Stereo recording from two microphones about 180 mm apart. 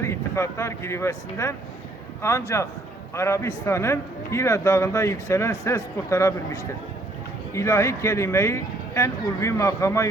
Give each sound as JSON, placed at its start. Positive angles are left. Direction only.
{"t": 0.0, "sound": "a man's voice", "side_deg": 15}